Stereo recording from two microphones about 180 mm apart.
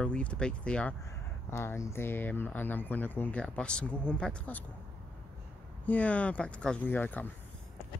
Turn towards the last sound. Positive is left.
turn(degrees=10)  # may be behind; listen again after turning